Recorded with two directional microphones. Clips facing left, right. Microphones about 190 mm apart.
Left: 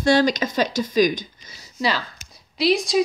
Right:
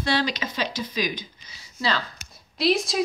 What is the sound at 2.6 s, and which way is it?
Speech, centre (ahead or behind).